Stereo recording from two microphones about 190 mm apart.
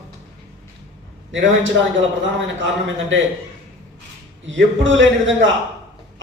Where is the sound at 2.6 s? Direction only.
90° right.